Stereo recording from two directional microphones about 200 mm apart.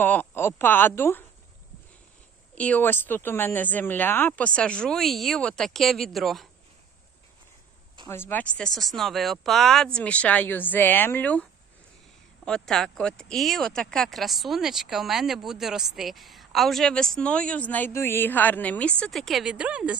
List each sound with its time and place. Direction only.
0.0 s speech: 10° left (ahead or behind)
2.6 s speech: 5° left (ahead or behind)
8.0 s speech: 10° left (ahead or behind)
12.5 s speech: 5° left (ahead or behind)